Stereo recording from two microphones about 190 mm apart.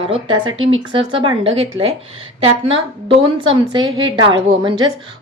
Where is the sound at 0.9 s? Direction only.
25° right (ahead or behind).